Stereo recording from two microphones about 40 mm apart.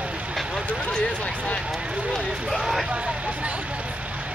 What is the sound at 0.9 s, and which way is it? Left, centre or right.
Speech, left.